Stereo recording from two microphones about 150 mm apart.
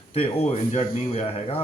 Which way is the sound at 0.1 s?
45° left (ahead or behind).